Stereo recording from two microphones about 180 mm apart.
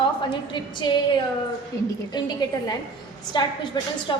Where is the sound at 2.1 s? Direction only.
20° left (ahead or behind).